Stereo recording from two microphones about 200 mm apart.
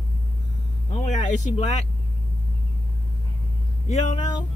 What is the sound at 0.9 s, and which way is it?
Speech, 35° left (ahead or behind).